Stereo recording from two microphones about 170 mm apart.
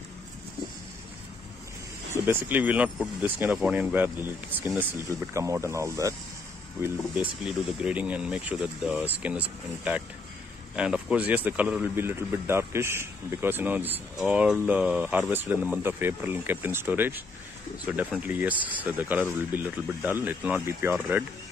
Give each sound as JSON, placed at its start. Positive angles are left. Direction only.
{"t": 2.2, "sound": "speech", "side_deg": -10}